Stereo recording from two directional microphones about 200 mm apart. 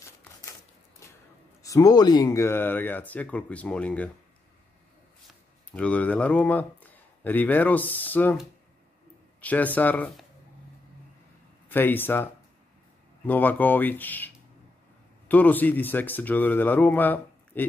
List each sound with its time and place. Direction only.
1.6 s speech: 15° left (ahead or behind)
5.7 s speech: 5° left (ahead or behind)
11.7 s speech: 10° left (ahead or behind)
13.3 s speech: 10° left (ahead or behind)